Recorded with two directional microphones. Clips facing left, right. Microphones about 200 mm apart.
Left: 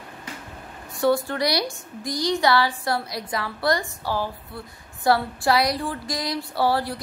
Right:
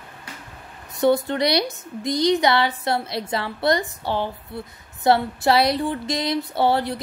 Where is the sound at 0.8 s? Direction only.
20° right (ahead or behind).